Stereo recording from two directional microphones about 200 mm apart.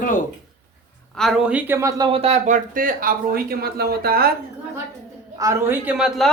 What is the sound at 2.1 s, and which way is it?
Speech, 30° right (ahead or behind).